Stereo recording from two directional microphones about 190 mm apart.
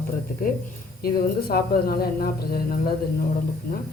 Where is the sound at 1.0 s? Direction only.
55° left (ahead or behind).